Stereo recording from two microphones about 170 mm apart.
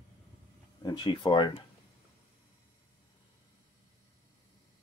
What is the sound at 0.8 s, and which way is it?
Speech, 25° left (ahead or behind).